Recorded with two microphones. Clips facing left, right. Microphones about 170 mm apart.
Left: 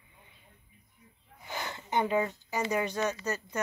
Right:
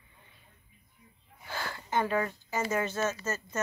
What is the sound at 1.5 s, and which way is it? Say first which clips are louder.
Speech: even; 20° left (ahead or behind).